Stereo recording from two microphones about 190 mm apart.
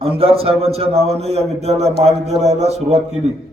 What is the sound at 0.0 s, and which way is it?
A man's voice, 30° right (ahead or behind).